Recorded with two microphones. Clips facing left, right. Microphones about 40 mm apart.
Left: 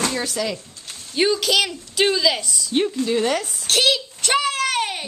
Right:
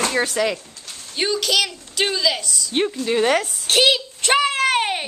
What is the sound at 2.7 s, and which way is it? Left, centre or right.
Speech, right.